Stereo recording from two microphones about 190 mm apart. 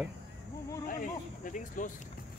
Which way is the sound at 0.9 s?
45° left (ahead or behind).